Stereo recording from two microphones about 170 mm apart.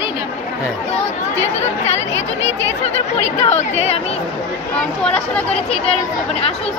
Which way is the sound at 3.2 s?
40° left (ahead or behind).